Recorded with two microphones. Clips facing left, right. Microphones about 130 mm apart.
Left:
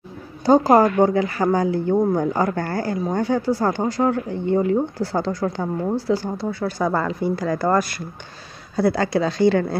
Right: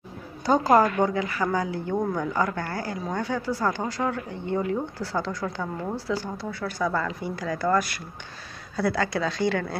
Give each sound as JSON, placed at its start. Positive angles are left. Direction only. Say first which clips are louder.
{"t": 0.5, "sound": "speech", "louder": "left 5 dB", "side_deg": 40}